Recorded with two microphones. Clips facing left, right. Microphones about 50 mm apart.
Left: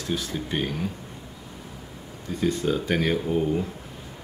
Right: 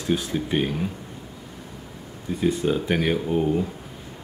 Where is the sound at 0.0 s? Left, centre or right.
Right.